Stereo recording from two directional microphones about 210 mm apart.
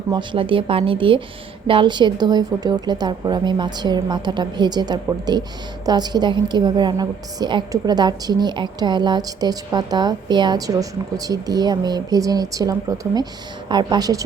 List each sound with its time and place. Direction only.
0.1 s a woman's voice: 20° right (ahead or behind)